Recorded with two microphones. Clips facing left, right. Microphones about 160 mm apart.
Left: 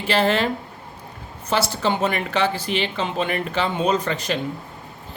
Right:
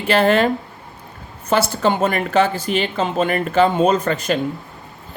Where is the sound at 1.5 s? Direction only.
50° right (ahead or behind).